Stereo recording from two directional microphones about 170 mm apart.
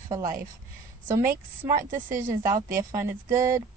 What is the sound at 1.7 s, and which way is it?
Speech, 50° right (ahead or behind).